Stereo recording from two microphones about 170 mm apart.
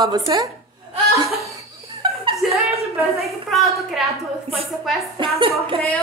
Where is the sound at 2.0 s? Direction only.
30° right (ahead or behind).